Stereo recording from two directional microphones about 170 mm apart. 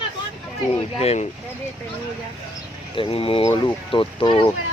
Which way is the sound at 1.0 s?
35° left (ahead or behind).